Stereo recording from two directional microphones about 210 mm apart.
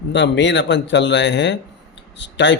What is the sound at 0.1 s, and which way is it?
Speech, 55° left (ahead or behind).